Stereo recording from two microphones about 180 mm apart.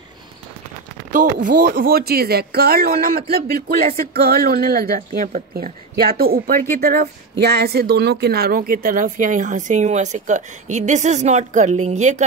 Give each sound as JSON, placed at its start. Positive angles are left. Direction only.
{"t": 1.1, "sound": "a woman's voice", "side_deg": -45}